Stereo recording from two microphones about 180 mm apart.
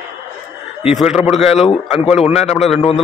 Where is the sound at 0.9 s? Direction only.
5° right (ahead or behind).